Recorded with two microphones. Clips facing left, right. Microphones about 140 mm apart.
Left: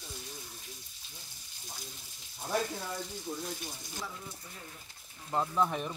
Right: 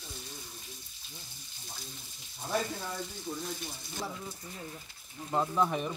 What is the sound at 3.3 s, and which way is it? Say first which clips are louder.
Speech: right 1 dB; 5° left (ahead or behind).